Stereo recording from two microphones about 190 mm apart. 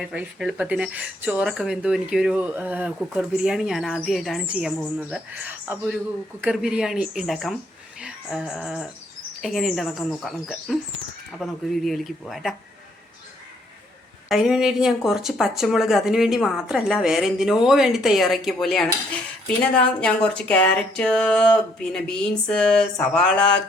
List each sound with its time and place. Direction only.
0.1 s a woman's voice: 5° right (ahead or behind)
8.0 s a sound: 5° right (ahead or behind)
8.6 s a woman's voice: centre (ahead or behind)
14.3 s a woman's voice: centre (ahead or behind)